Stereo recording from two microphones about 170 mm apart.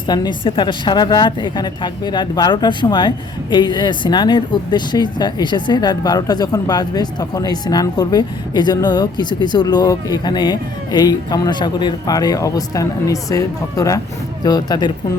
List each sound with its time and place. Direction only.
0.1 s speech: 25° left (ahead or behind)